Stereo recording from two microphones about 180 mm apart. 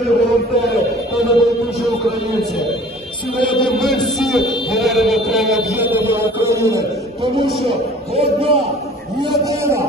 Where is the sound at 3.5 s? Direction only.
Centre (ahead or behind).